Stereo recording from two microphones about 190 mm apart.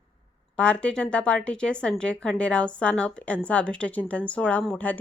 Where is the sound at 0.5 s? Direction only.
5° left (ahead or behind).